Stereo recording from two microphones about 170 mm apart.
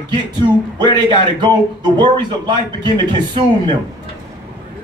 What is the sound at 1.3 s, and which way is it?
Speech, 25° right (ahead or behind).